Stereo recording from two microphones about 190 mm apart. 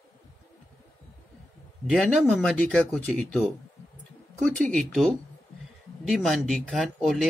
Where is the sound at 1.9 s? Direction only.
5° right (ahead or behind).